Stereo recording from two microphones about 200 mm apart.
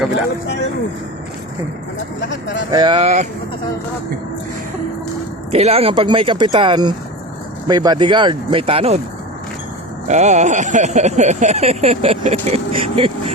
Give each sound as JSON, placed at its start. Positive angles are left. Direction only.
{"t": 2.7, "sound": "speech", "side_deg": -20}
{"t": 3.0, "sound": "speech", "side_deg": -35}
{"t": 5.5, "sound": "speech", "side_deg": -30}
{"t": 10.1, "sound": "speech", "side_deg": -35}